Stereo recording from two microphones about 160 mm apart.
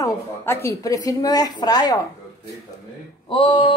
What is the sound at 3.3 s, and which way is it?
Speech, 30° left (ahead or behind).